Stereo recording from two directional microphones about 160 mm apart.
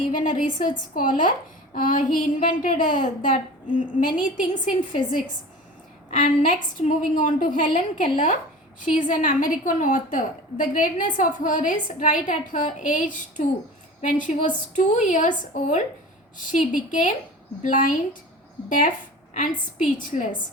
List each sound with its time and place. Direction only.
0.0 s a woman's voice: 55° left (ahead or behind)
6.1 s a woman's voice: 55° left (ahead or behind)